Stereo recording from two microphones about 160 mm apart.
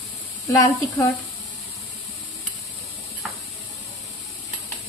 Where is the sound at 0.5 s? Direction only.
20° left (ahead or behind).